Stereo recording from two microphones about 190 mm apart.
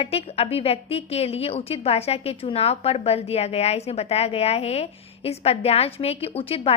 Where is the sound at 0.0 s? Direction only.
30° left (ahead or behind).